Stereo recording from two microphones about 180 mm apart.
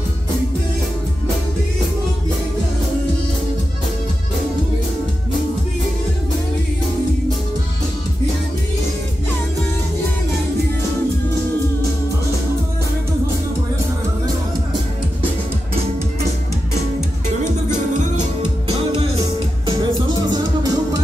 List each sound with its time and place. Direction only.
18.4 s music: 35° right (ahead or behind)
19.8 s music: 25° right (ahead or behind)